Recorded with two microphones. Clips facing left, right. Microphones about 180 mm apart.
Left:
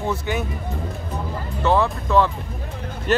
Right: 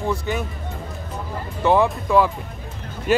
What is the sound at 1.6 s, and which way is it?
Speech, 15° right (ahead or behind).